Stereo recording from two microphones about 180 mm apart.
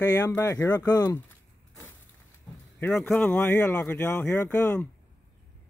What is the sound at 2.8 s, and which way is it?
Speech, 5° left (ahead or behind).